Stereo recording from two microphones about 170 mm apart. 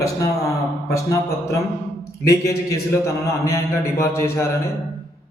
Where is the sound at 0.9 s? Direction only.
15° left (ahead or behind).